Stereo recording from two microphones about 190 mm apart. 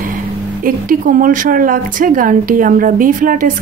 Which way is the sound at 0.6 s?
45° right (ahead or behind).